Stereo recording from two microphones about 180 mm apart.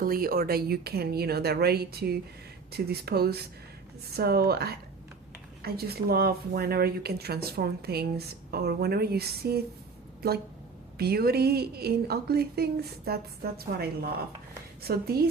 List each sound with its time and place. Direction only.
0.0 s speech: 55° right (ahead or behind)
10.9 s speech: 60° right (ahead or behind)